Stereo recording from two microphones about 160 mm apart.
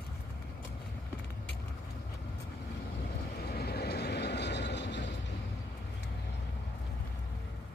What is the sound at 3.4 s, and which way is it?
Vehicle, 85° left.